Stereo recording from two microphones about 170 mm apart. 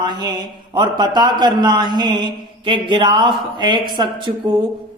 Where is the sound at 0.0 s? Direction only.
25° right (ahead or behind).